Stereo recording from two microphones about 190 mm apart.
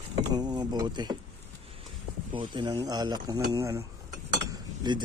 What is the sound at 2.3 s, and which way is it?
Speech, 25° right (ahead or behind).